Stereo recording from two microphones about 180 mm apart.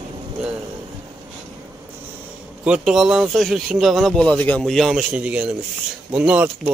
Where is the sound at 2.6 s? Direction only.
5° right (ahead or behind).